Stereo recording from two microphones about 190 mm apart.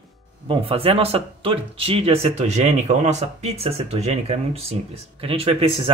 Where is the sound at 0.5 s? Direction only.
30° right (ahead or behind).